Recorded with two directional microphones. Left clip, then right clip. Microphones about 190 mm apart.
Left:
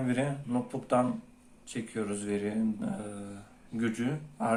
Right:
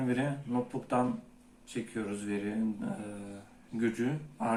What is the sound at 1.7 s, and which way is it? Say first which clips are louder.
Speech: left 2 dB; 45° left (ahead or behind).